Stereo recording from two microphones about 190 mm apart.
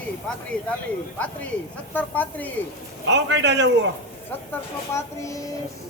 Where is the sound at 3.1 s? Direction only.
70° right (ahead or behind).